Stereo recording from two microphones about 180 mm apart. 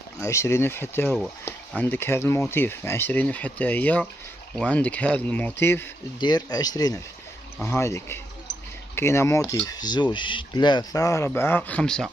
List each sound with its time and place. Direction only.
0.2 s speech: 15° left (ahead or behind)
6.1 s speech: 25° left (ahead or behind); by 12.1 s 5° left (ahead or behind)